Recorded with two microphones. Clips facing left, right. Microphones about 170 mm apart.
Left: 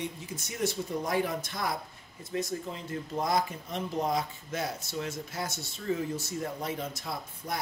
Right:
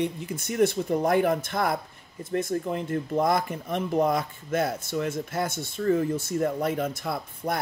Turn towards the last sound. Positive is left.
turn(degrees=-60)  # may be behind; listen again after turning